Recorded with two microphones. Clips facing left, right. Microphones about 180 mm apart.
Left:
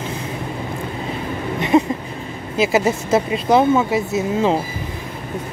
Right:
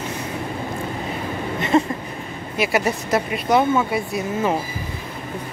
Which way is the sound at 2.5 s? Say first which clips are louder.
Left 4 dB; 25° left (ahead or behind).